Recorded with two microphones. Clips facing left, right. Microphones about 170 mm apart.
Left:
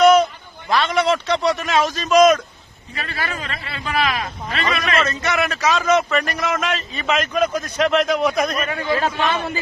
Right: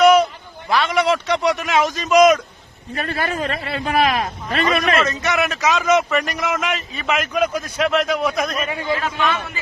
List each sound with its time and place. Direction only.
0.0 s a sound: 10° right (ahead or behind)
0.7 s a man's voice: 5° right (ahead or behind)
2.9 s a man's voice: 50° right (ahead or behind)
5.0 s a man's voice: 15° right (ahead or behind); by 8.6 s centre (ahead or behind)
9.0 s a man's voice: 30° left (ahead or behind)